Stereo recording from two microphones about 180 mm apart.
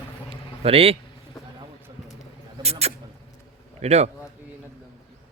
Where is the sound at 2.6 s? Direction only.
35° right (ahead or behind).